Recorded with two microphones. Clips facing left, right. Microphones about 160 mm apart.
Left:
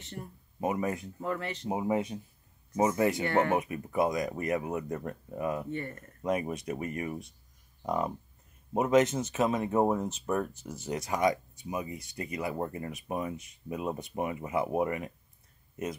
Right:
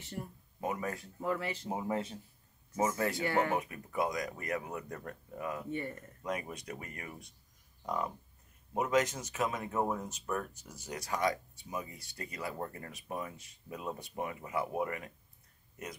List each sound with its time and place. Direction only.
0.0 s speech: 10° right (ahead or behind)
0.6 s speech: 20° left (ahead or behind)
1.2 s speech: 10° right (ahead or behind)
1.7 s speech: 15° left (ahead or behind)
5.7 s speech: 15° right (ahead or behind)
6.2 s speech: 25° left (ahead or behind)